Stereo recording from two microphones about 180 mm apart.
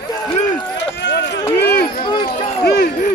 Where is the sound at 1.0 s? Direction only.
75° left (ahead or behind).